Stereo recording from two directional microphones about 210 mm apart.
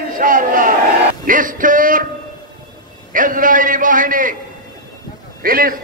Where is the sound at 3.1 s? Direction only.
40° right (ahead or behind).